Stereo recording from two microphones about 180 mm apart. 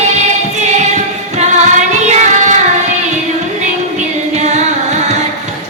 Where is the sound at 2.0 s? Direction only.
40° right (ahead or behind).